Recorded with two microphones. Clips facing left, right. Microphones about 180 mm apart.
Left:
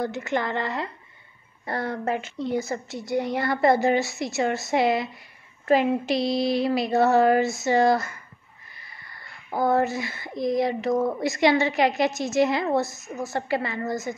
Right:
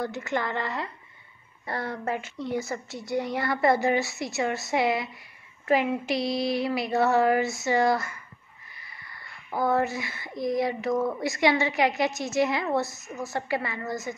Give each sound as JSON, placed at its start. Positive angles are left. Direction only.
{"t": 0.0, "sound": "speech", "side_deg": 20}
{"t": 9.5, "sound": "speech", "side_deg": 30}